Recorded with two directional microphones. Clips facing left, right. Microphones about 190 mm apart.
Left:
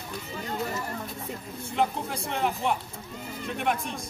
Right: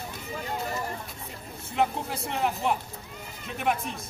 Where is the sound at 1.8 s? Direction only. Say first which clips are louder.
Right 1 dB; centre (ahead or behind).